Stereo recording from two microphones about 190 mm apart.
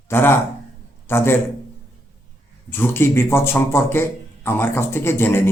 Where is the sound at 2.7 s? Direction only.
10° left (ahead or behind).